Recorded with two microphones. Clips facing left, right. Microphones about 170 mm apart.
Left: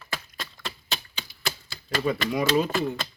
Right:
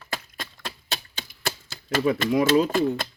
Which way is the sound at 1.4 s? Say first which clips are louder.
Right 3 dB; 45° right (ahead or behind).